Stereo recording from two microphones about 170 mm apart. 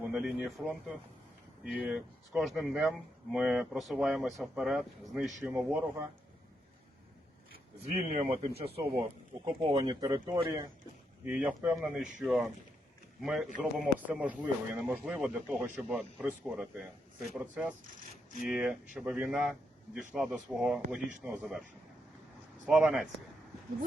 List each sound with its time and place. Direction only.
0.0 s a man's voice: 5° right (ahead or behind)
7.9 s speech: 45° right (ahead or behind)
9.5 s speech: 25° right (ahead or behind)
11.3 s a man's voice: 5° right (ahead or behind)
22.6 s speech: 5° right (ahead or behind)